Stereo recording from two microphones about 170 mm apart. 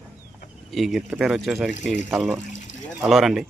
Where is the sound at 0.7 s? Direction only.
Centre (ahead or behind).